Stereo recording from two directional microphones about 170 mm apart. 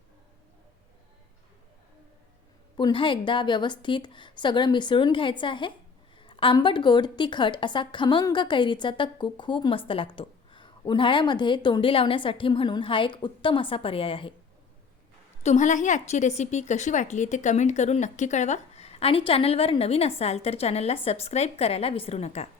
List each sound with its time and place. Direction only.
2.7 s a woman's voice: 30° left (ahead or behind)
15.4 s a woman's voice: 45° left (ahead or behind)